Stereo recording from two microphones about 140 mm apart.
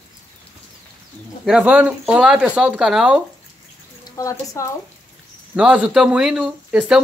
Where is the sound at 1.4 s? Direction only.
5° right (ahead or behind).